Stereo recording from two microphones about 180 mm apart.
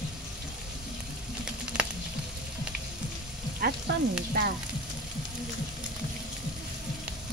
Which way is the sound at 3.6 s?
50° right (ahead or behind).